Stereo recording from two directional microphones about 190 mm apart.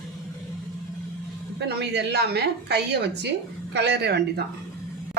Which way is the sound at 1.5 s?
60° right (ahead or behind).